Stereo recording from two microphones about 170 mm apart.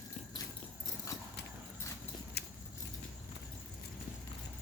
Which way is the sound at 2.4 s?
70° left (ahead or behind).